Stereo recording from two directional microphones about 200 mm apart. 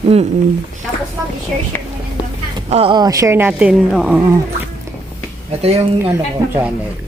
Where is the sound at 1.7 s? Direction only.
10° left (ahead or behind).